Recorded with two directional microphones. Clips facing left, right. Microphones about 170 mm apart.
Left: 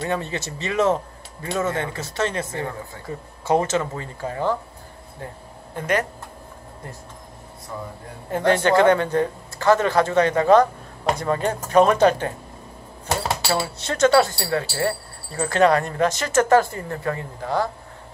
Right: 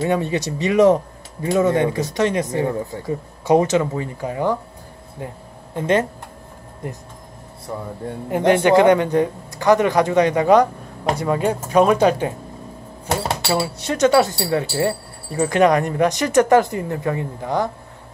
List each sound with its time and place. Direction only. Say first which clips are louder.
0.0 s speech: right 6 dB; 15° right (ahead or behind)
5.8 s speech: right 5 dB; 25° right (ahead or behind)
8.3 s speech: right 4 dB; 15° right (ahead or behind)